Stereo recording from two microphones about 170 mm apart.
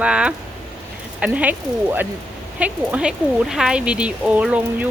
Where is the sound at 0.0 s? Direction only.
5° right (ahead or behind).